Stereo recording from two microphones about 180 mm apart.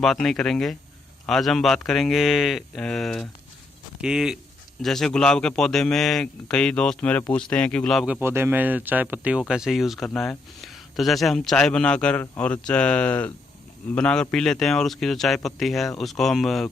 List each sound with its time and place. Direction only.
0.0 s speech: centre (ahead or behind)
8.2 s speech: 10° right (ahead or behind)